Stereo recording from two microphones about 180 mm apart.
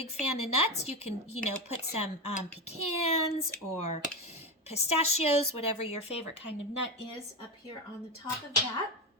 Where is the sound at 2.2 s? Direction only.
35° left (ahead or behind).